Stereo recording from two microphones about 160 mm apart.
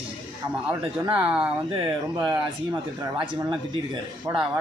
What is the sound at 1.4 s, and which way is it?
Speech, 30° right (ahead or behind).